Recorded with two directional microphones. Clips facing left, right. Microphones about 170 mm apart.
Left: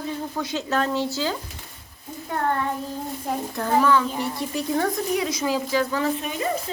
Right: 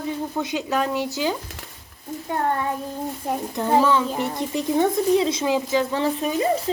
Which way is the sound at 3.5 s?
20° right (ahead or behind).